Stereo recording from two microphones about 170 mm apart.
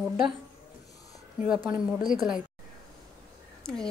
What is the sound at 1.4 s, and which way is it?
A woman's voice, 10° right (ahead or behind).